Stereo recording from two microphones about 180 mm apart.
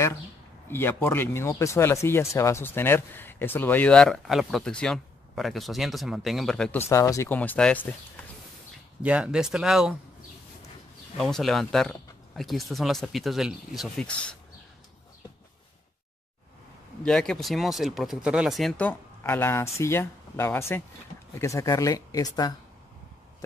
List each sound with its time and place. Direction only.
0.7 s speech: 10° left (ahead or behind)
9.0 s speech: 5° right (ahead or behind)
11.1 s speech: centre (ahead or behind)
17.0 s speech: 5° left (ahead or behind); by 22.5 s 20° left (ahead or behind)